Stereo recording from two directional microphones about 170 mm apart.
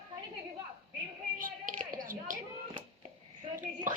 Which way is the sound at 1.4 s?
55° right (ahead or behind).